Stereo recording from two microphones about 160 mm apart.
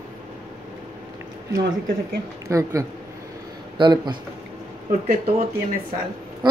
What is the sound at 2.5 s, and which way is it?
Speech, 20° right (ahead or behind).